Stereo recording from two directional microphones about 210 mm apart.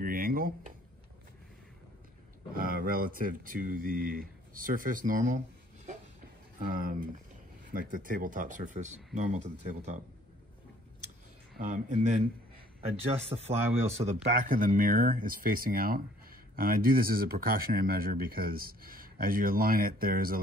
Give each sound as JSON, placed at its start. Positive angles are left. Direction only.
{"t": 0.0, "sound": "a sound", "side_deg": -45}
{"t": 2.5, "sound": "speech", "side_deg": -45}
{"t": 6.6, "sound": "speech", "side_deg": -40}
{"t": 11.7, "sound": "speech", "side_deg": -30}